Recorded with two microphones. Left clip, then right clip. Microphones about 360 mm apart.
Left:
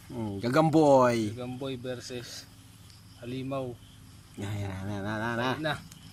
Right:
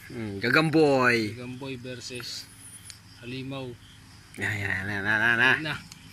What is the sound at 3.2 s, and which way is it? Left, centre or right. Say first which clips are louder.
Speech: left 2 dB; left.